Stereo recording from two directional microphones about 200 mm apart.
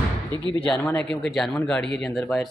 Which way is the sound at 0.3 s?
20° right (ahead or behind).